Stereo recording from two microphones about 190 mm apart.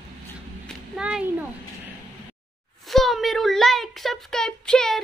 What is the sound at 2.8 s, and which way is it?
A child's voice, centre (ahead or behind).